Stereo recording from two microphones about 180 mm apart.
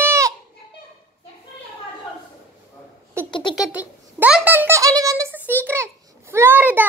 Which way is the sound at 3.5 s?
5° right (ahead or behind).